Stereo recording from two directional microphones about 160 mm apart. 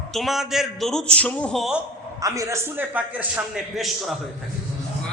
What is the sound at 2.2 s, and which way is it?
A man's voice, 20° right (ahead or behind).